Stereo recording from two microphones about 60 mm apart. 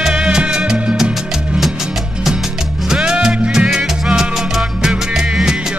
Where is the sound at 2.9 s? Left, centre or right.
Centre.